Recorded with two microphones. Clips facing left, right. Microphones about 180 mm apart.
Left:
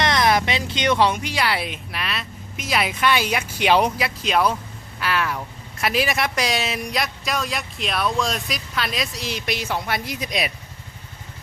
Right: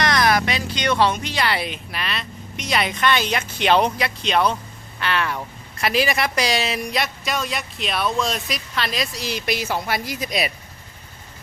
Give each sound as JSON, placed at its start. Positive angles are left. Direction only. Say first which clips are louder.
{"t": 0.0, "sound": "speech", "louder": "even", "side_deg": 25}